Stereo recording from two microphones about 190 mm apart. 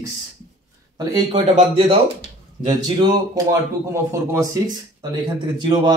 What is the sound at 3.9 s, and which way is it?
Speech, 15° right (ahead or behind).